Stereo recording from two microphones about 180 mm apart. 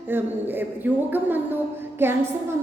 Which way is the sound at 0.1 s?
10° right (ahead or behind).